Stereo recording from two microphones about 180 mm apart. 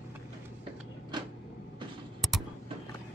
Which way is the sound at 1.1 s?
25° right (ahead or behind).